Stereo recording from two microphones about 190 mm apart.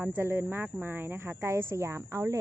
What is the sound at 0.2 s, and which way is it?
A woman's voice, 10° right (ahead or behind).